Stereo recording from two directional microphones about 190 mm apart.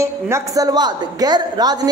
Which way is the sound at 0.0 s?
15° right (ahead or behind).